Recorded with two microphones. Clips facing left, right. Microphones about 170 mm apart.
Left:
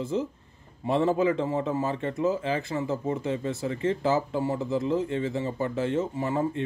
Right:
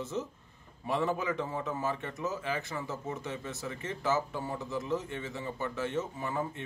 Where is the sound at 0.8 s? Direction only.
25° left (ahead or behind).